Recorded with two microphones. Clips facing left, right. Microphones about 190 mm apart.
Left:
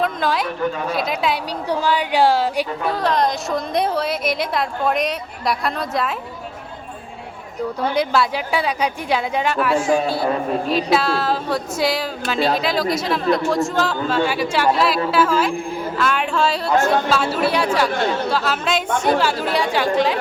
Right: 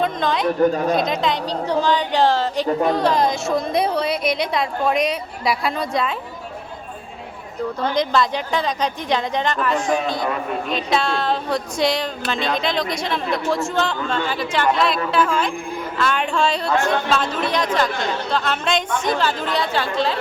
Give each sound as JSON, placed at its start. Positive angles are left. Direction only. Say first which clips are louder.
{"t": 0.0, "sound": "a sound", "louder": "even", "side_deg": 5}
{"t": 0.6, "sound": "speech", "louder": "right 6 dB", "side_deg": -40}
{"t": 0.9, "sound": "speech", "louder": "right 1 dB", "side_deg": 5}
{"t": 3.0, "sound": "a woman's voice", "louder": "right 1 dB", "side_deg": 0}
{"t": 7.8, "sound": "a woman's voice", "louder": "even", "side_deg": 10}